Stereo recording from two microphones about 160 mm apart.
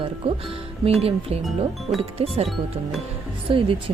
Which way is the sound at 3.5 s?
35° right (ahead or behind).